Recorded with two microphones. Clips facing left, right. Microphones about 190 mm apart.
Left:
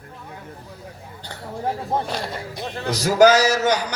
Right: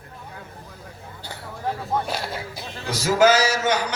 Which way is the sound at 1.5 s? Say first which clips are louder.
Left 2 dB; 30° left (ahead or behind).